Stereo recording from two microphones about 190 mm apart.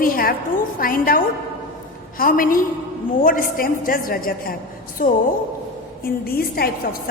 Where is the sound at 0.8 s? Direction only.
50° left (ahead or behind).